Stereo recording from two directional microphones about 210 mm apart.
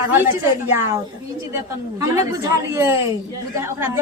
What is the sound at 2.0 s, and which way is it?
A woman's voice, 15° right (ahead or behind).